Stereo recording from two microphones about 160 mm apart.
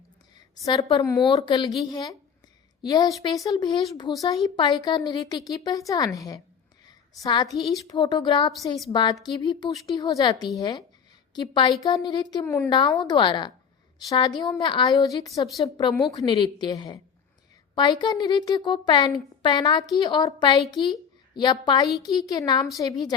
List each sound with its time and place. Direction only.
0.3 s a sound: 25° left (ahead or behind)
1.4 s a woman's voice: 25° left (ahead or behind)
6.8 s a sound: 25° left (ahead or behind)
7.9 s a woman's voice: 30° left (ahead or behind)
13.0 s a woman's voice: 30° left (ahead or behind)
15.9 s speech: centre (ahead or behind)
16.1 s a woman's voice: 30° left (ahead or behind)